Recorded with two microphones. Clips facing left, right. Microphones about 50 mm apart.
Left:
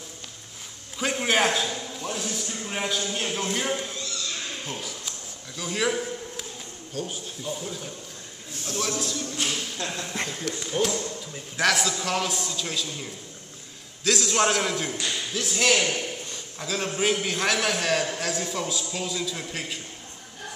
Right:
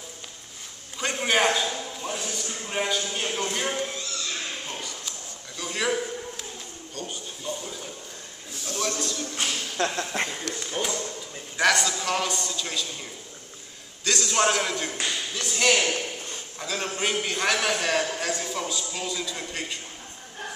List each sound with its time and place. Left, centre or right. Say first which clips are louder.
0.9 s a sound: even; centre
2.6 s a man's voice: right 2 dB; centre
5.6 s a man's voice: left 1 dB; centre
9.8 s speech: right 10 dB; right
10.6 s a man's voice: left 4 dB; centre